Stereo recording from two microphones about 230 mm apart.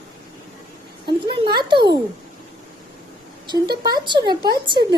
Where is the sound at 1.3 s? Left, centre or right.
Centre.